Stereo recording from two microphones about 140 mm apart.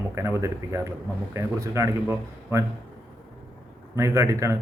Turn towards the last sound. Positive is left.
turn(degrees=-20)  # may be behind; listen again after turning